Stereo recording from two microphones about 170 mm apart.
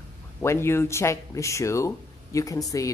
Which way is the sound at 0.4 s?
15° left (ahead or behind).